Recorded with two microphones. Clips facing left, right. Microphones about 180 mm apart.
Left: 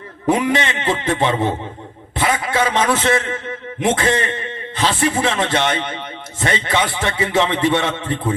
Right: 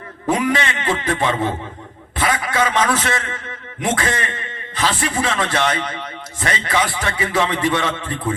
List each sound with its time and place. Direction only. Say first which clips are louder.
0.3 s a man's voice: left 2 dB; 25° left (ahead or behind)